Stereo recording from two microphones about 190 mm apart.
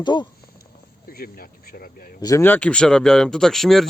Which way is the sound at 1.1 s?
50° left (ahead or behind).